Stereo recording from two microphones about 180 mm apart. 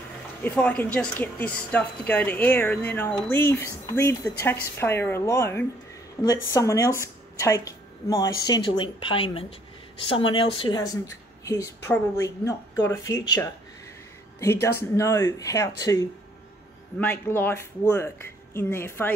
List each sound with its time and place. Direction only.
0.4 s a woman's voice: 10° left (ahead or behind); by 10.8 s 30° left (ahead or behind)
10.8 s a woman's voice: 20° left (ahead or behind)